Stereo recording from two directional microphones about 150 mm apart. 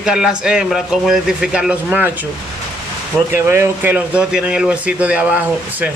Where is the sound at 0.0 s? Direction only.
5° right (ahead or behind).